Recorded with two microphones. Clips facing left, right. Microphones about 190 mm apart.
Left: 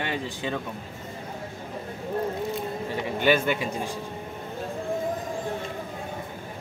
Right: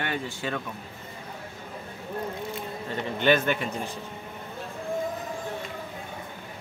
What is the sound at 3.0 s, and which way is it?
Speech, 10° left (ahead or behind).